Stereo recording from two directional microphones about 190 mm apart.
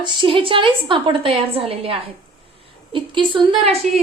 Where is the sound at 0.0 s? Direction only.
25° right (ahead or behind).